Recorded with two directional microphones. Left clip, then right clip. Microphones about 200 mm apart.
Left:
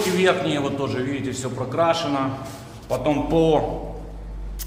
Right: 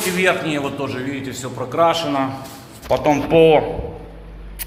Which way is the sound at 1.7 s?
15° right (ahead or behind).